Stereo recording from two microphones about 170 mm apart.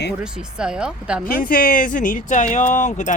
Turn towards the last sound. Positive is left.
turn(degrees=45)  # may be behind; listen again after turning